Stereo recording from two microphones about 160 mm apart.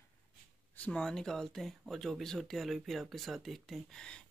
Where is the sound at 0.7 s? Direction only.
5° left (ahead or behind).